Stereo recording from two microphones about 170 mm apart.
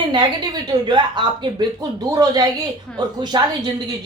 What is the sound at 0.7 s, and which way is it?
Speech, 25° right (ahead or behind).